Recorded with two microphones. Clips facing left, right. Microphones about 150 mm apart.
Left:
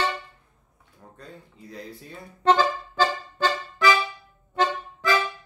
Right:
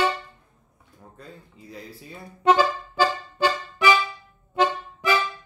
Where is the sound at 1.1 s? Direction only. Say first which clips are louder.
Even; 5° right (ahead or behind).